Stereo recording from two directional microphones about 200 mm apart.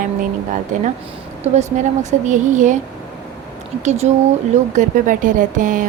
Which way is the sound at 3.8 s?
35° right (ahead or behind).